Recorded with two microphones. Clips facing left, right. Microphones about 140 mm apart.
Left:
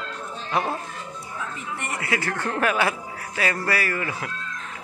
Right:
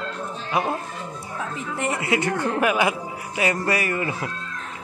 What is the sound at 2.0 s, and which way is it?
A man's voice, 20° right (ahead or behind).